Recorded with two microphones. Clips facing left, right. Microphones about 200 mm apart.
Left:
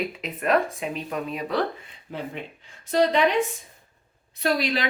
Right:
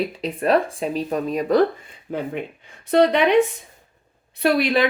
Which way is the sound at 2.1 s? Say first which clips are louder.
Right 7 dB; 55° right (ahead or behind).